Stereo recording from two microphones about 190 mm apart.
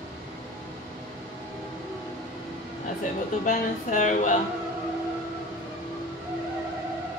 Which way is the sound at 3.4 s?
45° left (ahead or behind).